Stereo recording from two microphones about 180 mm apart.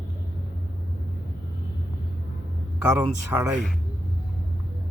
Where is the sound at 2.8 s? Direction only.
10° right (ahead or behind).